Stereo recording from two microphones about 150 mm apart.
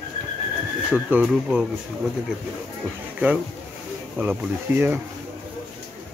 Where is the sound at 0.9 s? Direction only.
10° right (ahead or behind).